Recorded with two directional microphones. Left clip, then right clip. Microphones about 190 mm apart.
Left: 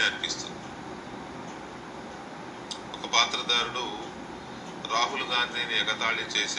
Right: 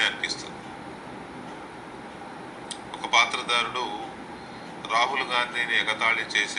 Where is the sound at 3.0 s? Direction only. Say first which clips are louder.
Right 3 dB; 15° right (ahead or behind).